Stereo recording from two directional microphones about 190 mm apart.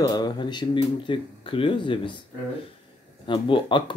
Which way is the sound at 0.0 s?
20° left (ahead or behind).